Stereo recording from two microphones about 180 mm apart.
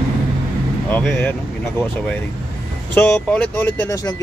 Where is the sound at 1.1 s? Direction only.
10° left (ahead or behind).